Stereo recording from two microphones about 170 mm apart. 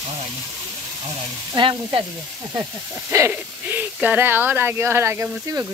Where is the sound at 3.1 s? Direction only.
15° right (ahead or behind).